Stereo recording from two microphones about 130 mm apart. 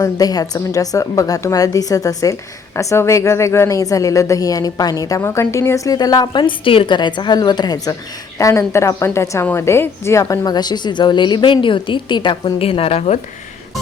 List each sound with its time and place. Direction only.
0.0 s a woman's voice: 30° left (ahead or behind); by 13.1 s 50° left (ahead or behind)